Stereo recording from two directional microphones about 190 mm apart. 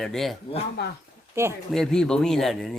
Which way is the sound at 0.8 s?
60° left (ahead or behind).